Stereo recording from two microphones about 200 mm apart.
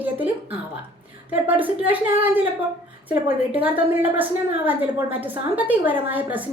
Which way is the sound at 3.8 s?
10° right (ahead or behind).